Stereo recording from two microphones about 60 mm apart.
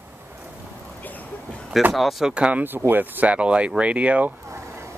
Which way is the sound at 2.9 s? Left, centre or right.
Right.